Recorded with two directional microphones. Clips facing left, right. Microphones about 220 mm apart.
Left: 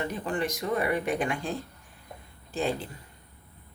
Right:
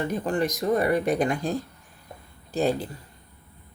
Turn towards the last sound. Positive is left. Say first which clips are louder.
# right 5 dB
turn(degrees=-40)  # may be behind; listen again after turning